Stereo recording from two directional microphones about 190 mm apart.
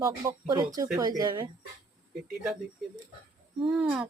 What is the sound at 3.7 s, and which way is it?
Speech, centre (ahead or behind).